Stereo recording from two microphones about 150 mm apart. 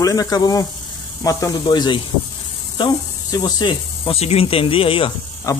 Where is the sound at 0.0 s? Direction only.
25° left (ahead or behind).